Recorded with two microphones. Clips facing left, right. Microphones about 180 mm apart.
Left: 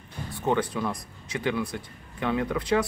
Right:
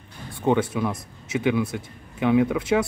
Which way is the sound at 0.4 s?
10° right (ahead or behind).